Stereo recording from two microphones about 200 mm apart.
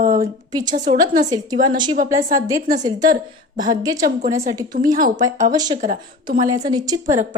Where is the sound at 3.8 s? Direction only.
15° right (ahead or behind).